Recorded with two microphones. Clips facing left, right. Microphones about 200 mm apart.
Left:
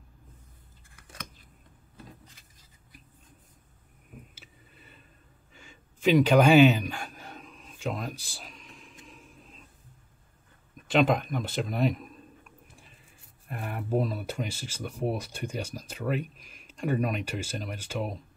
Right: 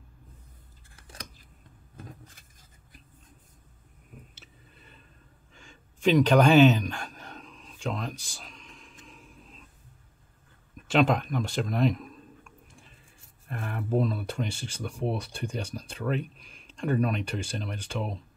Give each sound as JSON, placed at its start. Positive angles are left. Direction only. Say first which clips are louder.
{"t": 2.0, "sound": "vehicle", "louder": "right 3 dB", "side_deg": -50}
{"t": 5.5, "sound": "a sound", "louder": "left 1 dB", "side_deg": 5}
{"t": 10.9, "sound": "speech", "louder": "even", "side_deg": 0}